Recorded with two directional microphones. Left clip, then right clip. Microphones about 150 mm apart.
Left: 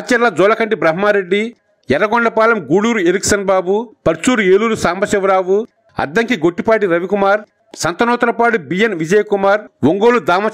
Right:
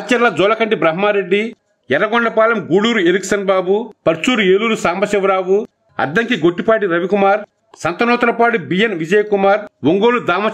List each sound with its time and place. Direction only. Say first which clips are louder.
0.1 s speech: left 1 dB; 35° left (ahead or behind)